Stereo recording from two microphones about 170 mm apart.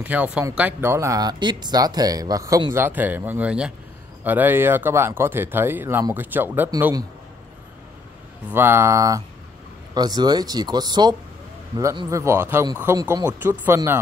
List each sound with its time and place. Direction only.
0.0 s speech: 10° right (ahead or behind)
8.5 s speech: 15° right (ahead or behind)